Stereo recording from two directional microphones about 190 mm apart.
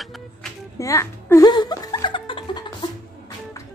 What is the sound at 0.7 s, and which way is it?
Music, 15° left (ahead or behind).